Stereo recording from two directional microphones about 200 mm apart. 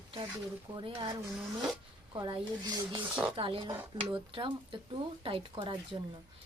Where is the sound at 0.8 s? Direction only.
20° right (ahead or behind).